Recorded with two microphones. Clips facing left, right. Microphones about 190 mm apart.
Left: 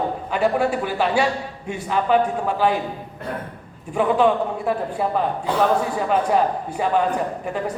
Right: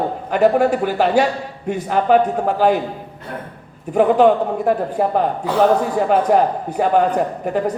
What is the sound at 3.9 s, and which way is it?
A man's voice, 60° right (ahead or behind).